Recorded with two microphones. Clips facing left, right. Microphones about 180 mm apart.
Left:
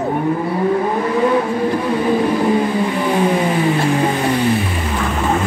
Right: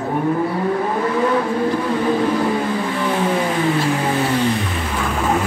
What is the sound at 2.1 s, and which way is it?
Vehicle, 15° left (ahead or behind).